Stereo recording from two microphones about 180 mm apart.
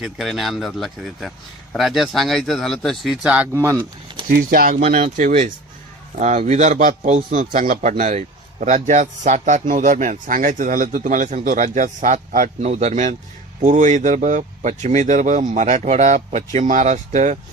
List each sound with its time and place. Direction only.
0.0 s a man's voice: centre (ahead or behind)
4.3 s speech: 55° right (ahead or behind)
4.9 s a man's voice: 45° right (ahead or behind)